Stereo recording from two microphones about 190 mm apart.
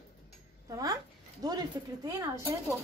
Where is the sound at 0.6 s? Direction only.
20° right (ahead or behind).